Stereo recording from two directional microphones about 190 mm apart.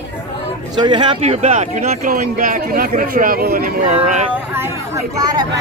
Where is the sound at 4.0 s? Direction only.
40° right (ahead or behind).